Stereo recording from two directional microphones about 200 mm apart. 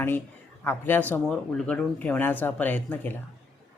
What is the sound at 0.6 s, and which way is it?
Speech, 10° left (ahead or behind).